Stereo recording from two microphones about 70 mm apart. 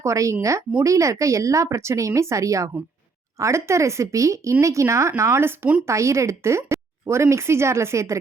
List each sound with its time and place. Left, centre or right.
0.0 s speech: right